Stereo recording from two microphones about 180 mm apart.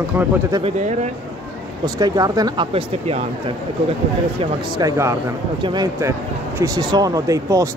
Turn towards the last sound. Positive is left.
turn(degrees=-20)  # may be behind; listen again after turning